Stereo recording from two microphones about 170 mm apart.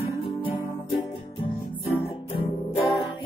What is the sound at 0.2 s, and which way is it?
Music, 30° left (ahead or behind).